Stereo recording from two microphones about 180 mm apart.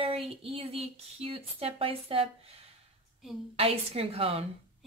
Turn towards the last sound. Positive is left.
turn(degrees=-30)  # may be behind; listen again after turning